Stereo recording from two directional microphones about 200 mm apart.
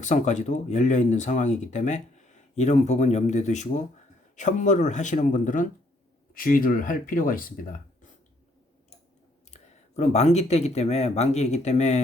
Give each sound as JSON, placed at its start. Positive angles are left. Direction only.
{"t": 0.0, "sound": "speech", "side_deg": 35}
{"t": 9.5, "sound": "speech", "side_deg": 35}